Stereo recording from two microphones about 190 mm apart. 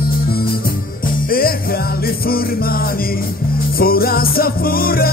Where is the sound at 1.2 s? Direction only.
50° left (ahead or behind).